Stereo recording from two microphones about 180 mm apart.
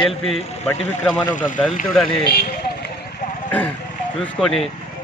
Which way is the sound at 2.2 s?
60° left (ahead or behind).